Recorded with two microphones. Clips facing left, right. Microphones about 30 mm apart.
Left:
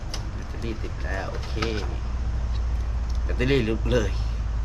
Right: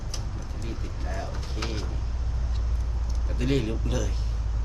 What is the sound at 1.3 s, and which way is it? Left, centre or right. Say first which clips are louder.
Speech: left 5 dB; centre.